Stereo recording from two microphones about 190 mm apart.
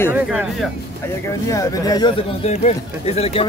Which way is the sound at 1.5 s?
20° left (ahead or behind).